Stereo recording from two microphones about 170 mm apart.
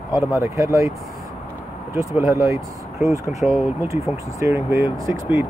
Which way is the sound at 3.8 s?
20° right (ahead or behind).